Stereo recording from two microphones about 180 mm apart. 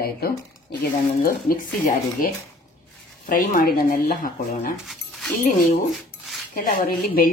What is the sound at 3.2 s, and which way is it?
Speech, 50° left (ahead or behind).